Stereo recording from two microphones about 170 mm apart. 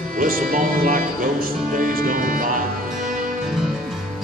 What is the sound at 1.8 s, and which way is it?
Music, 55° right (ahead or behind).